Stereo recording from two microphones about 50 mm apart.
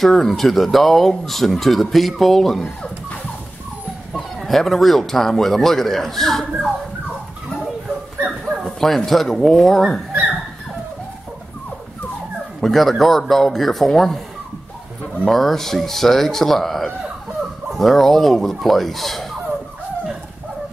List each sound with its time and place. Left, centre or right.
0.0 s speech: centre
4.1 s speech: centre
8.6 s speech: centre
12.5 s speech: centre
15.2 s speech: centre